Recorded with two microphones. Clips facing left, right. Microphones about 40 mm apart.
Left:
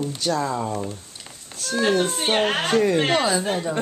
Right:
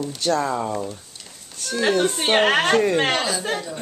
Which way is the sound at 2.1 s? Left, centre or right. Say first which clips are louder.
Right 3 dB; right.